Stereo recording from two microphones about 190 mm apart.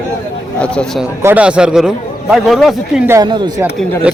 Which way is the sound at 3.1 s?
20° right (ahead or behind).